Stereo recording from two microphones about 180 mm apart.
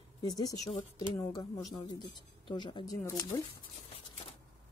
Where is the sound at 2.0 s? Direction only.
25° left (ahead or behind).